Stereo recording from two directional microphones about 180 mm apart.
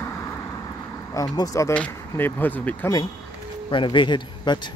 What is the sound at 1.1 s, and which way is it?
Speech, 20° left (ahead or behind).